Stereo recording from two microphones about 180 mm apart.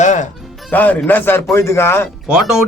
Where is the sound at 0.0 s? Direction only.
45° left (ahead or behind).